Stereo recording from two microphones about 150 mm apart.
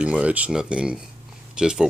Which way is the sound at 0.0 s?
10° right (ahead or behind).